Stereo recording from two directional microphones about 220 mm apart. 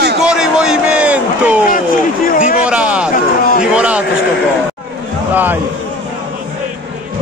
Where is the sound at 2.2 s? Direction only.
40° left (ahead or behind).